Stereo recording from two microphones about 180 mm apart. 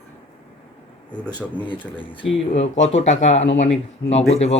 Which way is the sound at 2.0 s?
30° left (ahead or behind).